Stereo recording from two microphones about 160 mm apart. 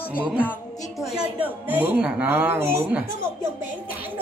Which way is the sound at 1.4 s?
10° right (ahead or behind).